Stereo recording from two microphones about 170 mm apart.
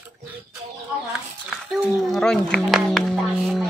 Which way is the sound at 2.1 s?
5° left (ahead or behind).